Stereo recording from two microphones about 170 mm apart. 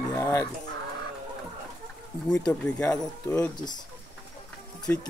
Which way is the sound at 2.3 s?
5° left (ahead or behind).